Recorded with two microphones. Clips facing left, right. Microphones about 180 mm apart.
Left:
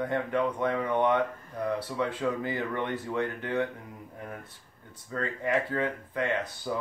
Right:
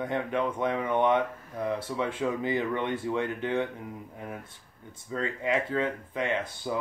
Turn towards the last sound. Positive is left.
turn(degrees=-20)  # may be behind; listen again after turning